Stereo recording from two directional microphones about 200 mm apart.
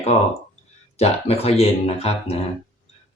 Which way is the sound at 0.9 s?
30° left (ahead or behind).